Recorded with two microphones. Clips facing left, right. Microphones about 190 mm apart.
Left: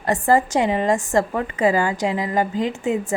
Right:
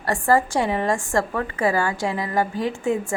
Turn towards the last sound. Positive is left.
turn(degrees=20)  # may be behind; listen again after turning